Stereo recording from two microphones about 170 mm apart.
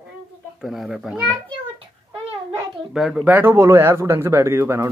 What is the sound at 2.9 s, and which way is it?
Speech, centre (ahead or behind).